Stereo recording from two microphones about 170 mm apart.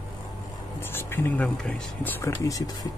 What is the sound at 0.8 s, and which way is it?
Speech, 15° left (ahead or behind).